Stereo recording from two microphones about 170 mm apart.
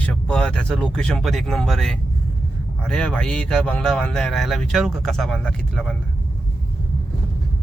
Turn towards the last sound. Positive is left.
turn(degrees=5)  # may be behind; listen again after turning